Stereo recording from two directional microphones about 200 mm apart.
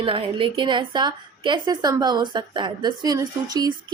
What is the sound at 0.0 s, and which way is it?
A woman's voice, 25° right (ahead or behind).